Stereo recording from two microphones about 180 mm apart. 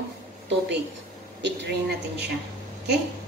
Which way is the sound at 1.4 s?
75° right (ahead or behind).